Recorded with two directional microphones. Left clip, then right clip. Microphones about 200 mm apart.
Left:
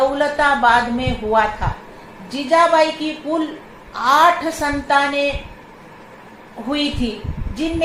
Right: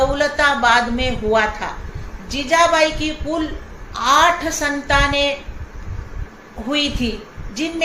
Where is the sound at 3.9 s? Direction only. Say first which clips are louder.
Left 1 dB; 20° right (ahead or behind).